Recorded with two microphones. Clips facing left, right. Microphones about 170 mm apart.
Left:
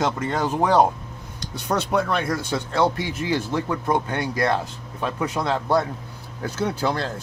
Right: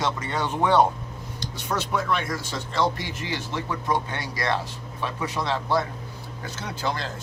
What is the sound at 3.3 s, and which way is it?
Speech, 50° left (ahead or behind).